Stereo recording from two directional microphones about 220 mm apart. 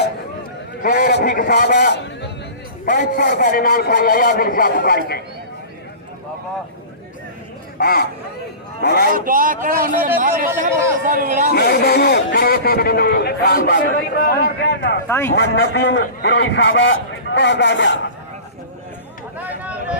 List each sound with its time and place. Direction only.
0.8 s a man's voice: 40° left (ahead or behind)
2.8 s a man's voice: 35° left (ahead or behind)
7.8 s a man's voice: 45° left (ahead or behind)
9.1 s speech: 40° right (ahead or behind)
11.5 s a man's voice: 45° left (ahead or behind)
15.0 s a man's voice: 10° left (ahead or behind)
15.4 s a man's voice: 50° left (ahead or behind)
19.4 s a sound: 5° right (ahead or behind)